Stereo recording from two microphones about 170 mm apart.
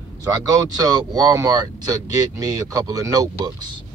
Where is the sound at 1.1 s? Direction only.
20° right (ahead or behind).